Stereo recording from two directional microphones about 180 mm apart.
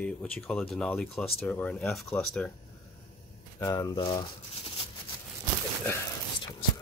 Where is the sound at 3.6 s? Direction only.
20° left (ahead or behind).